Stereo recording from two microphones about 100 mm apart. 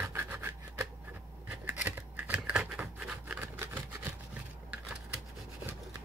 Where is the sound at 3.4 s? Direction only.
20° right (ahead or behind).